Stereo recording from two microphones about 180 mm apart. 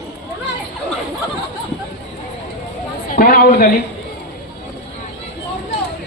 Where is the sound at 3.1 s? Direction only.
55° left (ahead or behind).